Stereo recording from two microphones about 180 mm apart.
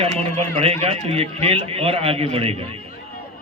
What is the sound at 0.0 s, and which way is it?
A man's voice, 35° right (ahead or behind).